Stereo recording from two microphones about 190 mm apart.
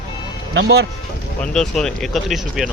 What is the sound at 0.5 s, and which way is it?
Speech, 60° right (ahead or behind).